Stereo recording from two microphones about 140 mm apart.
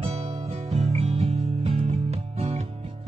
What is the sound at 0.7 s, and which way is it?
Music, 45° right (ahead or behind).